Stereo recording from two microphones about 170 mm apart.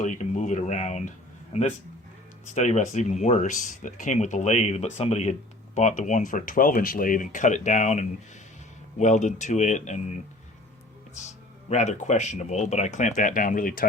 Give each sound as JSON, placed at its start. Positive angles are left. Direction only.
{"t": 0.0, "sound": "speech", "side_deg": 45}
{"t": 2.6, "sound": "speech", "side_deg": 45}
{"t": 11.1, "sound": "speech", "side_deg": 45}